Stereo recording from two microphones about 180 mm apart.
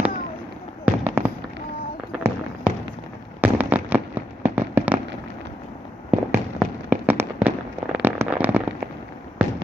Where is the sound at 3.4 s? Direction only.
10° right (ahead or behind).